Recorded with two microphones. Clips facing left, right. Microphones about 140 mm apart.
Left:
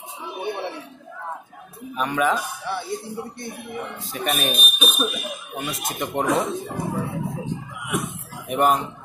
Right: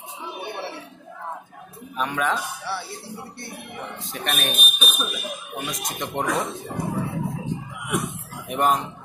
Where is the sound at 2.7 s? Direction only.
15° left (ahead or behind).